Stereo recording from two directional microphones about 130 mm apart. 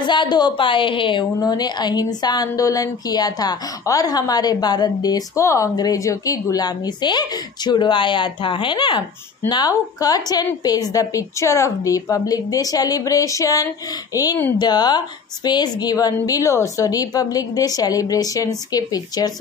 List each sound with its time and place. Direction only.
0.0 s a woman's voice: 35° left (ahead or behind)